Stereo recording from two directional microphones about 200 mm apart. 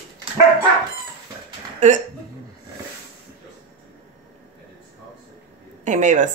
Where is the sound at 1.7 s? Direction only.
40° right (ahead or behind).